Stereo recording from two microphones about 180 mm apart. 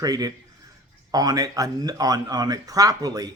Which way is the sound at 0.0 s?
20° right (ahead or behind).